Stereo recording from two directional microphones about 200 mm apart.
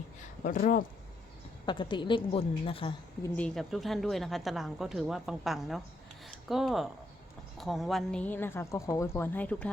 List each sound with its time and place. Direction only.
0.4 s speech: 45° left (ahead or behind)
1.6 s a woman's voice: 25° left (ahead or behind)
3.2 s a woman's voice: 5° left (ahead or behind)